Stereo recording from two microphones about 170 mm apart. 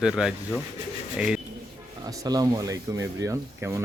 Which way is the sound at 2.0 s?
20° right (ahead or behind).